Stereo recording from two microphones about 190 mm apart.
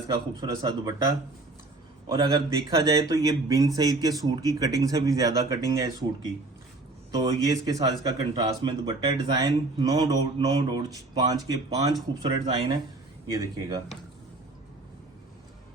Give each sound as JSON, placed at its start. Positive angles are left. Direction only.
{"t": 0.1, "sound": "speech", "side_deg": -20}
{"t": 2.1, "sound": "speech", "side_deg": -20}